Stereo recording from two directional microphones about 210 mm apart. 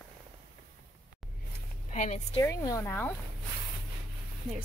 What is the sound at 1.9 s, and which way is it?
Speech, 35° left (ahead or behind).